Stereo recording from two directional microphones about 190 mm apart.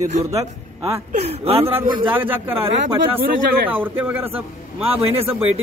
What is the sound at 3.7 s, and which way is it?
Speech, 10° right (ahead or behind).